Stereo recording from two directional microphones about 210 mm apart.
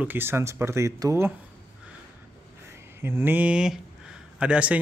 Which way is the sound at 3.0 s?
10° right (ahead or behind).